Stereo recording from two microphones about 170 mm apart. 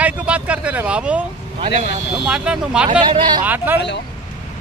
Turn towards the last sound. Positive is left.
turn(degrees=90)